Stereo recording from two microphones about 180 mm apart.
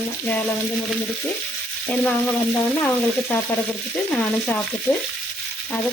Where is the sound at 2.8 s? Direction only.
10° left (ahead or behind).